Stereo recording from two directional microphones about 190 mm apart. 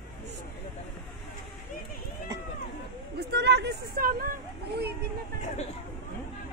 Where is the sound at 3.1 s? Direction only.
60° right (ahead or behind).